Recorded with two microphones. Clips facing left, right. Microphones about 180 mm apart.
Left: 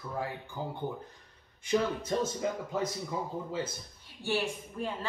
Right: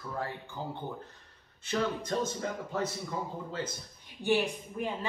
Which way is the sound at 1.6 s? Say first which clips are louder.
Left 2 dB; 10° left (ahead or behind).